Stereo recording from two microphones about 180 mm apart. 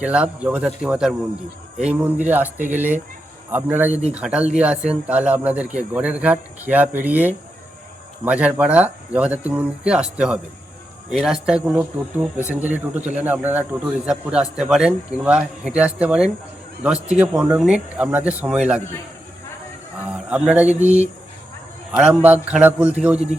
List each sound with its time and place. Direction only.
0.0 s speech: 5° right (ahead or behind)
20.1 s speech: 5° right (ahead or behind)
23.1 s speech: 35° right (ahead or behind)